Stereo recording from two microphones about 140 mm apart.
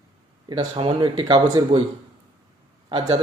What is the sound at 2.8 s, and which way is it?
Speech, 35° right (ahead or behind).